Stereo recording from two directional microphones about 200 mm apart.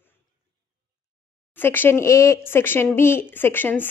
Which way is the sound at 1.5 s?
10° left (ahead or behind).